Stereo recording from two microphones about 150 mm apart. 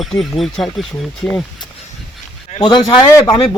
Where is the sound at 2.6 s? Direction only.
30° left (ahead or behind).